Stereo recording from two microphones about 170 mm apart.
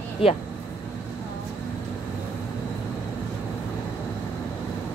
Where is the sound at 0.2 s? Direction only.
35° left (ahead or behind).